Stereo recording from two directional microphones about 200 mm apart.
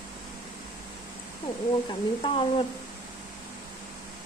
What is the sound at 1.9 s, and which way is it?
Speech, 25° left (ahead or behind).